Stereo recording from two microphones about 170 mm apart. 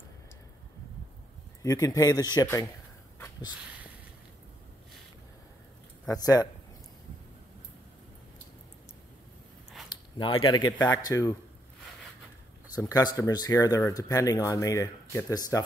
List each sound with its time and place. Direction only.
1.6 s speech: 20° left (ahead or behind)
3.2 s a sound: 25° left (ahead or behind)
6.0 s speech: 20° left (ahead or behind)
10.1 s speech: 25° left (ahead or behind)
12.7 s speech: 20° left (ahead or behind)